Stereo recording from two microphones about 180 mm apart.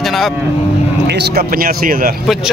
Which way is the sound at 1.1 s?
65° right (ahead or behind).